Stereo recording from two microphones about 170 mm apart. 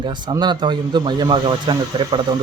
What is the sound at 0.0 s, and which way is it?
Speech, 25° right (ahead or behind).